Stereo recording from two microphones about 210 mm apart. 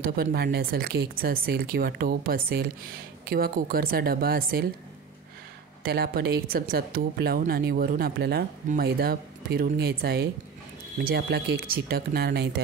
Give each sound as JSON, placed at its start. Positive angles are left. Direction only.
{"t": 0.0, "sound": "speech", "side_deg": -45}
{"t": 5.9, "sound": "speech", "side_deg": -50}